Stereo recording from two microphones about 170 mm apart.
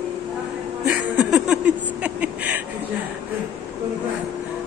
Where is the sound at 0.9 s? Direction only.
10° right (ahead or behind).